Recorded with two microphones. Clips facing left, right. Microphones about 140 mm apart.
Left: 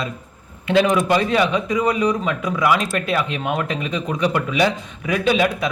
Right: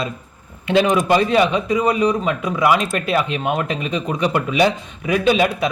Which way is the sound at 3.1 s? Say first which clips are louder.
Right 4 dB; 25° right (ahead or behind).